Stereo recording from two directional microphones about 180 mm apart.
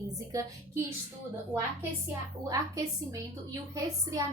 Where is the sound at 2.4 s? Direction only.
20° right (ahead or behind).